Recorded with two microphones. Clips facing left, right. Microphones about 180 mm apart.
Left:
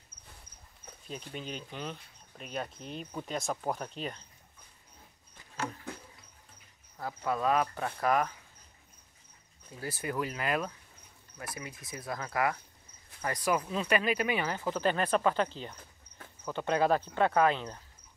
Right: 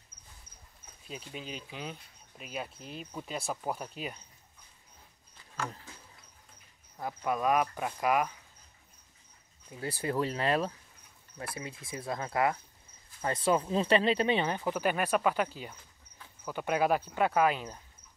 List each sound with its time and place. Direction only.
1.0 s speech: 5° right (ahead or behind)
7.0 s speech: 15° right (ahead or behind)
9.7 s speech: 25° right (ahead or behind); by 17.7 s 10° right (ahead or behind)